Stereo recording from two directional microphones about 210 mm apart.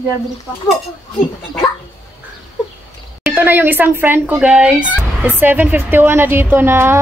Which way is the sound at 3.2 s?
10° right (ahead or behind).